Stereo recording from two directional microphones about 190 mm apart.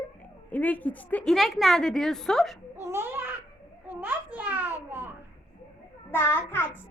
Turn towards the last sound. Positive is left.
turn(degrees=10)  # may be behind; listen again after turning